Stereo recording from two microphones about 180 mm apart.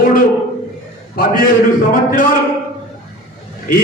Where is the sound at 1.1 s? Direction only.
55° left (ahead or behind).